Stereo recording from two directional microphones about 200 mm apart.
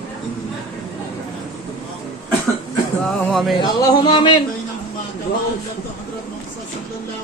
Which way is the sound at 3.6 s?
25° left (ahead or behind).